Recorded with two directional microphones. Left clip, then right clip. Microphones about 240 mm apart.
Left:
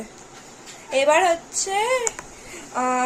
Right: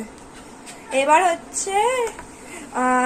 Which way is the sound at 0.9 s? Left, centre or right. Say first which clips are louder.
Right 1 dB; left.